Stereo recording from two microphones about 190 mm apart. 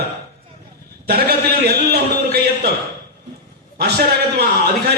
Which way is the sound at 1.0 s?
55° right (ahead or behind).